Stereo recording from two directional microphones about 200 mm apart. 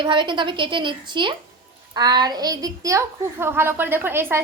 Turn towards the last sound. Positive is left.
turn(degrees=-10)  # may be behind; listen again after turning